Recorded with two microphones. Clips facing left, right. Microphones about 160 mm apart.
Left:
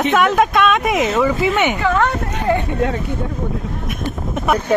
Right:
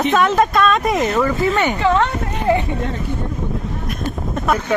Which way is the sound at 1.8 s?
25° right (ahead or behind).